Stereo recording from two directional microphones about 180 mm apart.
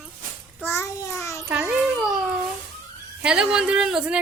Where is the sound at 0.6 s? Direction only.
15° left (ahead or behind).